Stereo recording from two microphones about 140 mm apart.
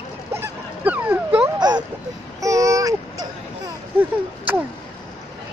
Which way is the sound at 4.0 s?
15° right (ahead or behind).